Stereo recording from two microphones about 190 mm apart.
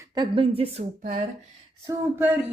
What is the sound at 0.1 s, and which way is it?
Speech, 25° right (ahead or behind).